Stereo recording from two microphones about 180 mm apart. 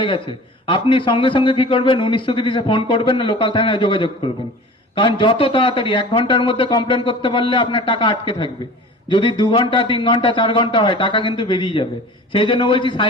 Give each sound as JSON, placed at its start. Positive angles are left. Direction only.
{"t": 0.7, "sound": "a man's voice", "side_deg": 30}